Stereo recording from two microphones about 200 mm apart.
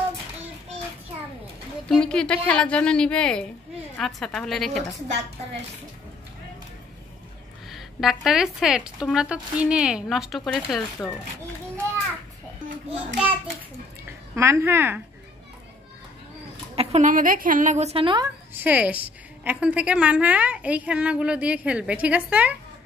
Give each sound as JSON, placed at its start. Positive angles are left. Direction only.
{"t": 1.9, "sound": "speech", "side_deg": 5}
{"t": 7.7, "sound": "speech", "side_deg": 0}
{"t": 14.3, "sound": "a woman's voice", "side_deg": -15}
{"t": 16.7, "sound": "a woman's voice", "side_deg": -35}
{"t": 18.5, "sound": "a woman's voice", "side_deg": -10}